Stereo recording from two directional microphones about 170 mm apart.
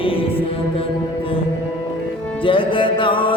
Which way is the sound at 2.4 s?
30° left (ahead or behind).